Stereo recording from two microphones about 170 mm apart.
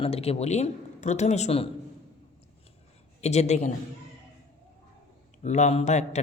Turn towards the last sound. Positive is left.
turn(degrees=40)  # may be behind; listen again after turning